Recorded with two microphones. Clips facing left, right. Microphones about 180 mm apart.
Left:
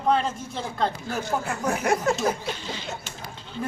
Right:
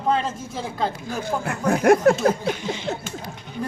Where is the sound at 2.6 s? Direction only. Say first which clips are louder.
Right 6 dB; 20° right (ahead or behind).